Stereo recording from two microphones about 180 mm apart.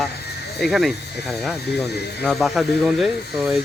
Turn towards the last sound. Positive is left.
turn(degrees=0)  # may be behind; listen again after turning